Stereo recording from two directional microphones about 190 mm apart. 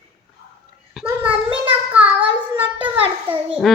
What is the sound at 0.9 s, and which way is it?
Speech, 5° right (ahead or behind).